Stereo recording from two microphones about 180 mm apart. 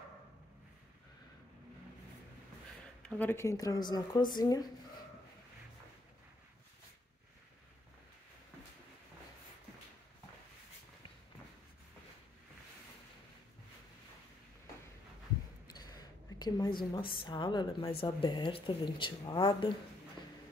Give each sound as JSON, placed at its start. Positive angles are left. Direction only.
{"t": 3.1, "sound": "speech", "side_deg": 10}
{"t": 15.6, "sound": "a sound", "side_deg": 20}
{"t": 17.2, "sound": "speech", "side_deg": 25}